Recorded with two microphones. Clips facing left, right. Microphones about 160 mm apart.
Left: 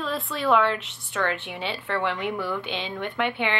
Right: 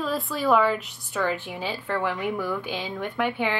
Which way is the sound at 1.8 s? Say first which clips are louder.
Even; 10° right (ahead or behind).